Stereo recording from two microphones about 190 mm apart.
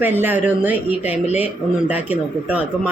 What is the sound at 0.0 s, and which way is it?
Speech, 10° right (ahead or behind).